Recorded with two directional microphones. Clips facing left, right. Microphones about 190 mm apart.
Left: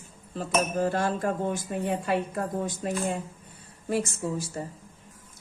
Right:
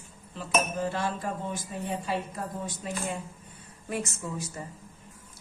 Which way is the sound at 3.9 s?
30° left (ahead or behind).